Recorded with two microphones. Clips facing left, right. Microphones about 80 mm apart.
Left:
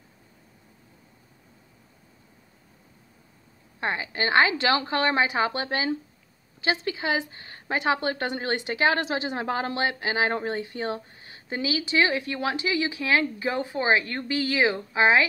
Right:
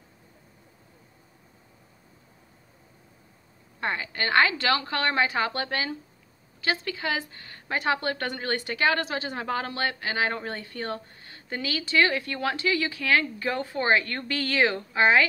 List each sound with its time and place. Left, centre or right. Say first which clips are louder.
3.8 s a woman's voice: left 2 dB; centre